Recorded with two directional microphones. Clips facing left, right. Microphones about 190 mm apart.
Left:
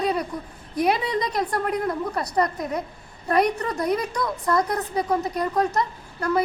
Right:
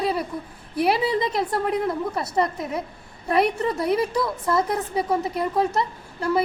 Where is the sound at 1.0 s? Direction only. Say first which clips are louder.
Right 3 dB; 30° right (ahead or behind).